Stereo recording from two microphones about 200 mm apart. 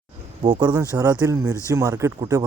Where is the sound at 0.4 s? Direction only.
20° right (ahead or behind).